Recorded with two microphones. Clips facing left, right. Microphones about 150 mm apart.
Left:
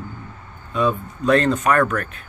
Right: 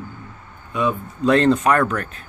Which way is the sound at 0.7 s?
15° right (ahead or behind).